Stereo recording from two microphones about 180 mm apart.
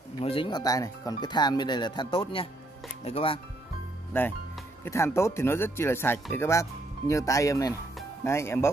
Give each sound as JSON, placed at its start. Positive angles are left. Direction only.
{"t": 0.2, "sound": "speech", "side_deg": 30}
{"t": 4.8, "sound": "speech", "side_deg": 15}